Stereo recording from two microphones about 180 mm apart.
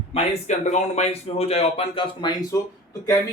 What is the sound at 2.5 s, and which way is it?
Speech, 15° left (ahead or behind).